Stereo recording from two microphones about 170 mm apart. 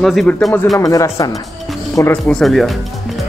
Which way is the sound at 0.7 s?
20° left (ahead or behind).